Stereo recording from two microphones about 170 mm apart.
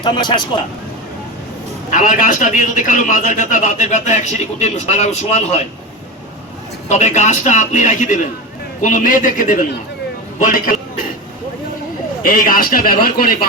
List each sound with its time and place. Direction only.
0.0 s a man's voice: 25° left (ahead or behind)
1.9 s a man's voice: 50° left (ahead or behind)
6.8 s a man's voice: 45° left (ahead or behind)
12.2 s a man's voice: 55° left (ahead or behind)